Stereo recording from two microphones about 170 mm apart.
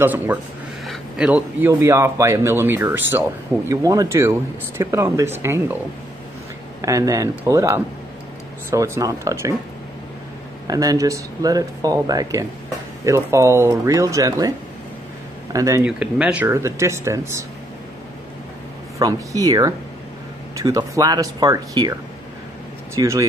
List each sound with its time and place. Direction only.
0.0 s a man's voice: 10° right (ahead or behind)
6.8 s a man's voice: 20° right (ahead or behind)
10.7 s speech: 20° right (ahead or behind)
15.5 s speech: 20° right (ahead or behind)
15.8 s a man's voice: 5° right (ahead or behind)
18.9 s speech: 20° right (ahead or behind)
22.9 s speech: 20° right (ahead or behind)